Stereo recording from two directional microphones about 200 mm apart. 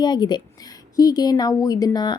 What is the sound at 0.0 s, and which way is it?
A woman's voice, 20° left (ahead or behind).